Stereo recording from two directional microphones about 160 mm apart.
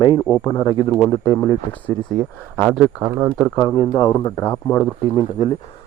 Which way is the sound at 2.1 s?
5° right (ahead or behind).